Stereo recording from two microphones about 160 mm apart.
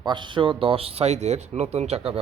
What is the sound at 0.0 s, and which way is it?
Speech, 30° right (ahead or behind).